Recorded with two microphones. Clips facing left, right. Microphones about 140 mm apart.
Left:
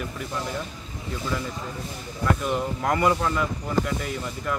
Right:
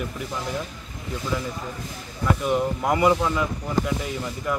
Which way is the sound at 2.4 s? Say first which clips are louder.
Right 3 dB; 5° right (ahead or behind).